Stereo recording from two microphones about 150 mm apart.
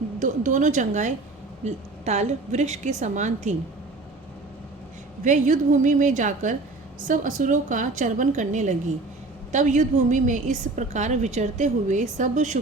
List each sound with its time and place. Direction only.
0.2 s a woman's voice: 60° right (ahead or behind)
5.2 s a woman's voice: 55° right (ahead or behind)